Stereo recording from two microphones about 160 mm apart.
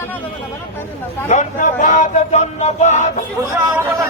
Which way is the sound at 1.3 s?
50° left (ahead or behind).